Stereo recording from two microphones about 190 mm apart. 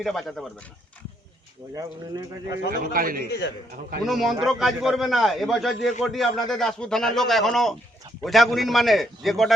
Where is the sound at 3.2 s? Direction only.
60° left (ahead or behind).